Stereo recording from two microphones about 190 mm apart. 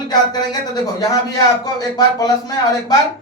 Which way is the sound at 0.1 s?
20° left (ahead or behind).